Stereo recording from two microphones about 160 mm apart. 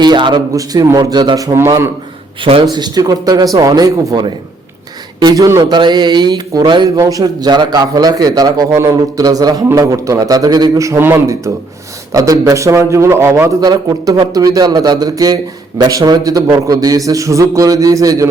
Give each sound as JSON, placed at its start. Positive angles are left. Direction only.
{"t": 0.0, "sound": "speech", "side_deg": -30}
{"t": 2.4, "sound": "speech", "side_deg": -30}